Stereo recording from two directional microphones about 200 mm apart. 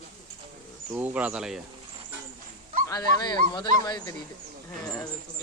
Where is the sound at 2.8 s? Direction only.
20° left (ahead or behind).